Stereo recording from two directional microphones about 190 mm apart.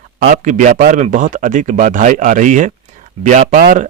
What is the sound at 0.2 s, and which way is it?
Speech, 45° right (ahead or behind).